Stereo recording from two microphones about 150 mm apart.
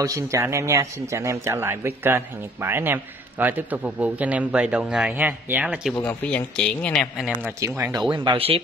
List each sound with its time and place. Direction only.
0.0 s speech: 20° right (ahead or behind)
6.0 s speech: 10° left (ahead or behind)
7.4 s speech: 15° right (ahead or behind)
8.1 s speech: 30° right (ahead or behind)